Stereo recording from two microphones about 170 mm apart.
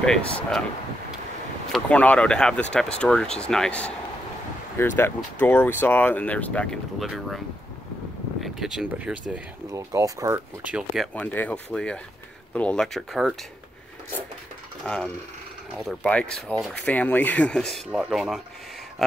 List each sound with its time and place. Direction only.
0.0 s speech: 5° left (ahead or behind)
1.7 s speech: 10° left (ahead or behind)
9.7 s speech: 20° right (ahead or behind)
11.0 s speech: 10° left (ahead or behind)
14.8 s speech: 10° left (ahead or behind)